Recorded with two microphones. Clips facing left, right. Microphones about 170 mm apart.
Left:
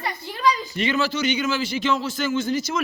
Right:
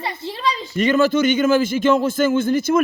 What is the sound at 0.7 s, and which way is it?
A man's voice, 45° right (ahead or behind).